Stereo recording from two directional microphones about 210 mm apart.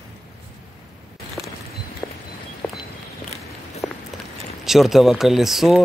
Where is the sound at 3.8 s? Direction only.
Centre (ahead or behind).